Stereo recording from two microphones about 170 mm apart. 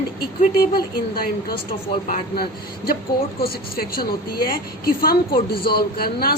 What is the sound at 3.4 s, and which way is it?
A woman's voice, 60° left (ahead or behind).